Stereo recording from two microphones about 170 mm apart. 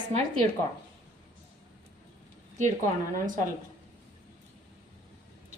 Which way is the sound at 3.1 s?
50° right (ahead or behind).